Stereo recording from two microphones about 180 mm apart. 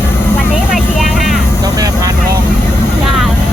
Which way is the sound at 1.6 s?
20° right (ahead or behind).